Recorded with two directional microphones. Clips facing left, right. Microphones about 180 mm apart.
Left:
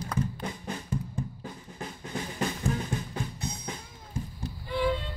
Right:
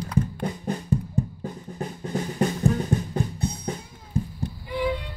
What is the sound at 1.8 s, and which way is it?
Drum, 40° right (ahead or behind).